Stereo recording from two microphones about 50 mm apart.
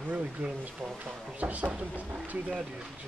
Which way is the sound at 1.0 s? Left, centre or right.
Right.